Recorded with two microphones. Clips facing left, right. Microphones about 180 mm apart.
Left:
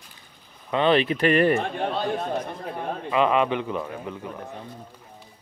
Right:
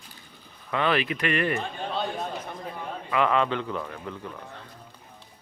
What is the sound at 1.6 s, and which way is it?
Speech, 60° left (ahead or behind).